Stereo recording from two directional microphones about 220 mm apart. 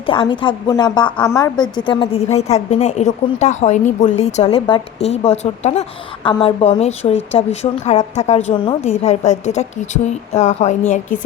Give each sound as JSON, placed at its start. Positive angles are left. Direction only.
{"t": 0.1, "sound": "a woman's voice", "side_deg": 20}
{"t": 1.2, "sound": "a woman's voice", "side_deg": 10}